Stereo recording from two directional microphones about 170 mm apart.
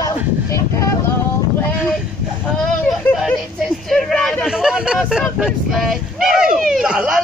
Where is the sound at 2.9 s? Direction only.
Centre (ahead or behind).